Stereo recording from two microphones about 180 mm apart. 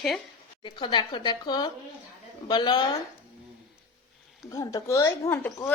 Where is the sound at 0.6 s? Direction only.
25° left (ahead or behind).